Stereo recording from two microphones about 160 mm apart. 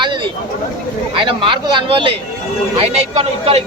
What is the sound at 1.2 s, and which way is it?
A man's voice, 30° right (ahead or behind).